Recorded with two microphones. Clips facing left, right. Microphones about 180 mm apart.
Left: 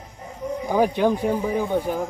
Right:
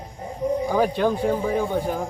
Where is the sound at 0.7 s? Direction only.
10° left (ahead or behind).